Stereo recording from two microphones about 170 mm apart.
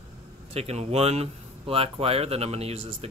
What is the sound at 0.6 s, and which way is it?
Speech, 35° right (ahead or behind).